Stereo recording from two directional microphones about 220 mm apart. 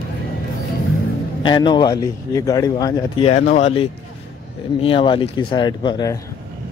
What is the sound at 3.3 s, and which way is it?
Speech, 30° left (ahead or behind).